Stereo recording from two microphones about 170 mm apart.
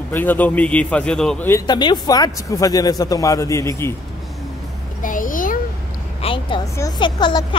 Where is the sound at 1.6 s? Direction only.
25° left (ahead or behind).